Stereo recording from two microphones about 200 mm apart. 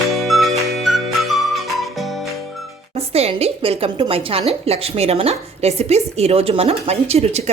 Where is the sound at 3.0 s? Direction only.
30° right (ahead or behind).